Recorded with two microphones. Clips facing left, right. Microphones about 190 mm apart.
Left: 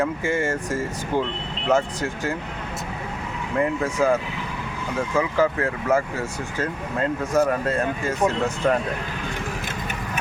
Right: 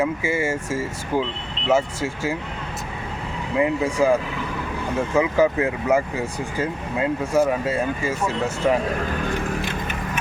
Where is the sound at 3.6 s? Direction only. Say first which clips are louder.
Right 2 dB; 10° right (ahead or behind).